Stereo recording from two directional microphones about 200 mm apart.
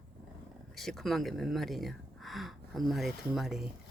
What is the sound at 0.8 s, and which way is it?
Speech, centre (ahead or behind).